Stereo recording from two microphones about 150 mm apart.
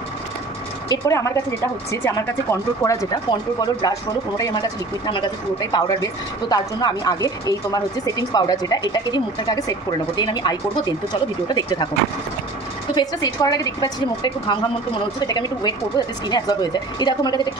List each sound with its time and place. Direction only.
0.8 s speech: 20° left (ahead or behind)
12.9 s speech: 25° left (ahead or behind)